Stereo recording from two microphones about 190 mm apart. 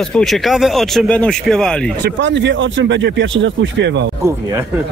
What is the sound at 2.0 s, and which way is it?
Speech, 70° right (ahead or behind).